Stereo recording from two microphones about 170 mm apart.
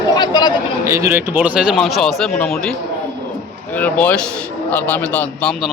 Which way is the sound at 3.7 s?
10° left (ahead or behind).